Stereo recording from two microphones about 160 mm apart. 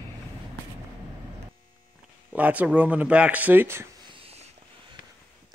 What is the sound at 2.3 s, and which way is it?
Speech, 10° right (ahead or behind).